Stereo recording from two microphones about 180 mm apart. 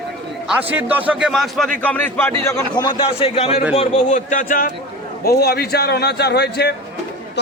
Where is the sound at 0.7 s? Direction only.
10° right (ahead or behind); by 2.3 s 10° left (ahead or behind).